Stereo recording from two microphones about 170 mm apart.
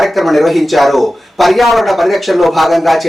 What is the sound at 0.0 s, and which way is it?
A man's voice, centre (ahead or behind).